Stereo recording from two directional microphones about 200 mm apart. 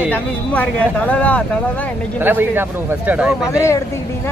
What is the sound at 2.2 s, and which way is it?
A man's voice, 10° right (ahead or behind).